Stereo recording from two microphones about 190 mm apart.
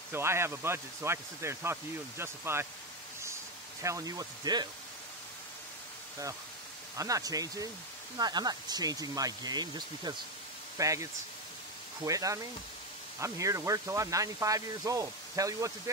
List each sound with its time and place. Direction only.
0.1 s speech: 15° right (ahead or behind)
3.8 s speech: 15° right (ahead or behind)
7.0 s speech: 15° right (ahead or behind)